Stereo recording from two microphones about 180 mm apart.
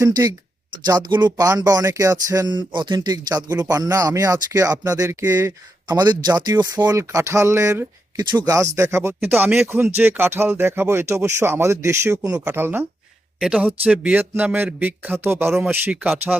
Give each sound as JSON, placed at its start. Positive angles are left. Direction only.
{"t": 0.9, "sound": "speech", "side_deg": -25}